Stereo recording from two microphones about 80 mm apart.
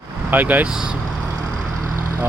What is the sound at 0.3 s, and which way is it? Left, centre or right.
Speech, right.